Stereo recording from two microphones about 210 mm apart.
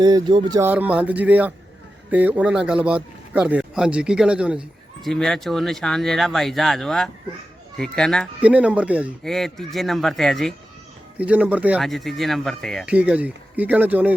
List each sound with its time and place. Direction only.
0.0 s speech: 20° right (ahead or behind)
0.7 s speech: 5° right (ahead or behind)